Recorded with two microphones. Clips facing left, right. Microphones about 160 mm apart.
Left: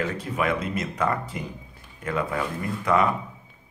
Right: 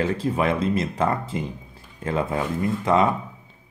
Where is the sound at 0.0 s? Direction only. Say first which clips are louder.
Right 4 dB; 30° right (ahead or behind).